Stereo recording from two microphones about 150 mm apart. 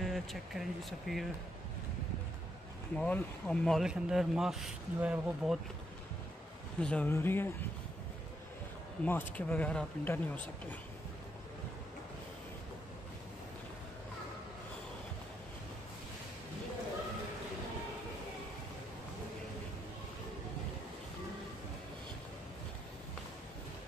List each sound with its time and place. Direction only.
0.0 s speech: centre (ahead or behind)
3.0 s speech: 10° left (ahead or behind)
6.8 s speech: 10° left (ahead or behind)
9.0 s speech: 10° left (ahead or behind)